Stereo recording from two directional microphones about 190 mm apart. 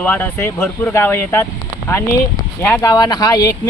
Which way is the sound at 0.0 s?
10° left (ahead or behind).